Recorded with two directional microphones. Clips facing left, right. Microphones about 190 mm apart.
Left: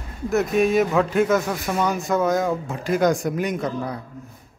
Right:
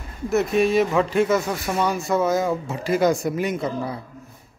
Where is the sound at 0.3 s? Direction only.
Centre (ahead or behind).